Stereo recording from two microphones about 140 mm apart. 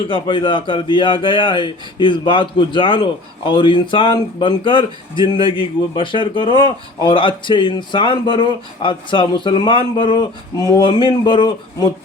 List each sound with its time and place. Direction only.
0.1 s speech: 35° left (ahead or behind)